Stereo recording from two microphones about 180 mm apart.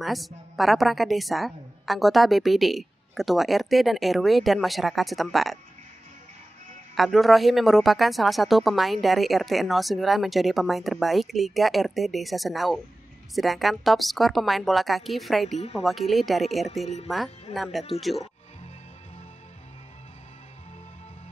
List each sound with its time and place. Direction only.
0.0 s a woman's voice: centre (ahead or behind)
7.0 s a woman's voice: centre (ahead or behind)
16.8 s speech: 35° left (ahead or behind)
17.6 s a woman's voice: centre (ahead or behind)